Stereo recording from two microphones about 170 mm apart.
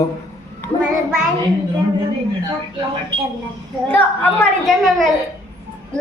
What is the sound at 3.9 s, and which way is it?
Speech, 10° left (ahead or behind).